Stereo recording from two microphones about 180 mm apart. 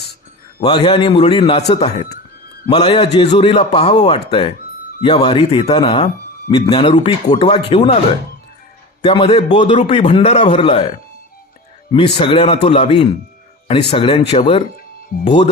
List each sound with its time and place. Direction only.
0.6 s a man's voice: 25° left (ahead or behind)
9.0 s a man's voice: 30° left (ahead or behind)
11.9 s a man's voice: 30° left (ahead or behind)